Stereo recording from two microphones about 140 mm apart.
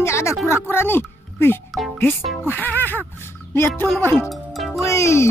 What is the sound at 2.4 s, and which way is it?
Music, 15° left (ahead or behind).